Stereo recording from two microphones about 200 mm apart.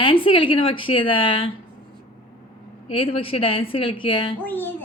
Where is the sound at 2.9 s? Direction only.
25° left (ahead or behind).